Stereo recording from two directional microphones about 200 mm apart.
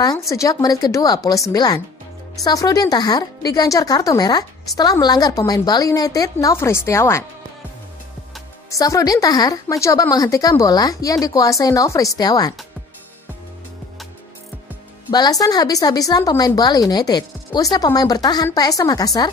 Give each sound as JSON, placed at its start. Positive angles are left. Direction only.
{"t": 0.3, "sound": "speech", "side_deg": 15}
{"t": 8.6, "sound": "speech", "side_deg": 15}
{"t": 15.0, "sound": "speech", "side_deg": 20}